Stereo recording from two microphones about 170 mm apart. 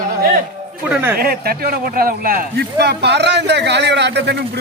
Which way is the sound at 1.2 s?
60° right (ahead or behind).